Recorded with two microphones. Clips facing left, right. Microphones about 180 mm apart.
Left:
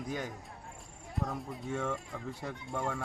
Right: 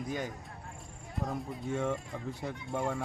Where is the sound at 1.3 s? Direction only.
Centre (ahead or behind).